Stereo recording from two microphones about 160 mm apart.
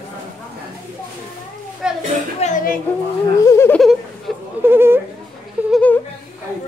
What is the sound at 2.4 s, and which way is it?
Speech, 50° left (ahead or behind).